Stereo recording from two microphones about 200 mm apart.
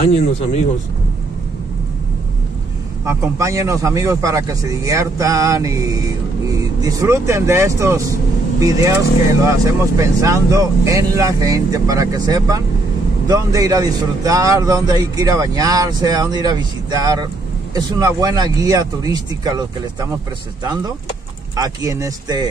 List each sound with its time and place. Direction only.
3.1 s a man's voice: 15° right (ahead or behind)